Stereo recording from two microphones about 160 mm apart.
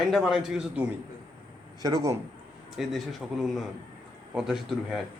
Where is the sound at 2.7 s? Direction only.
Centre (ahead or behind).